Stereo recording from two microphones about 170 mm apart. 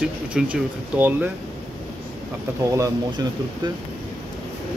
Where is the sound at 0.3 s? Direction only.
5° right (ahead or behind).